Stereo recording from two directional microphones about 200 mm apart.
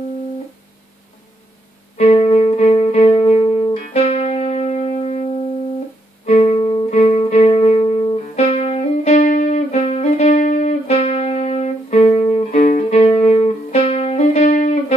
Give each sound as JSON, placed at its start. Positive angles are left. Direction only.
{"t": 2.0, "sound": "music", "side_deg": 30}
{"t": 6.9, "sound": "music", "side_deg": 35}